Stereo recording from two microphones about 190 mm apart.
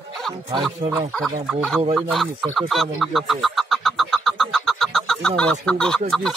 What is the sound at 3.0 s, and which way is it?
Vehicle, centre (ahead or behind).